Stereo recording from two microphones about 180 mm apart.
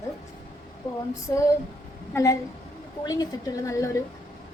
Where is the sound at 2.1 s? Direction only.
15° left (ahead or behind).